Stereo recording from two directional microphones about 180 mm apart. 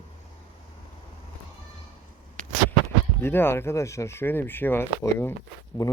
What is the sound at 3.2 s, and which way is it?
Speech, 15° left (ahead or behind).